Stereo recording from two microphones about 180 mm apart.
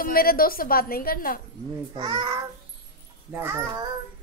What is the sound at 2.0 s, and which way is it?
Speech, 25° right (ahead or behind).